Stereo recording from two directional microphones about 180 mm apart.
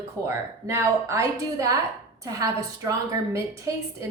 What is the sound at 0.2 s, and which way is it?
A woman's voice, 15° right (ahead or behind).